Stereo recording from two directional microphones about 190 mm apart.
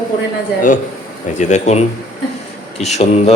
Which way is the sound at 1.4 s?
35° left (ahead or behind).